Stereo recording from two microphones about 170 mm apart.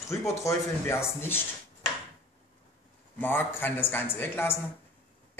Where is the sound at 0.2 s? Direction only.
15° left (ahead or behind).